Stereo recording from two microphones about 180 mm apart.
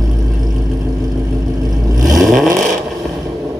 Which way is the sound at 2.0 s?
Centre (ahead or behind).